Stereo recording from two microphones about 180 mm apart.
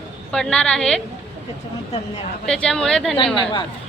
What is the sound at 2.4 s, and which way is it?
Speech, 5° left (ahead or behind).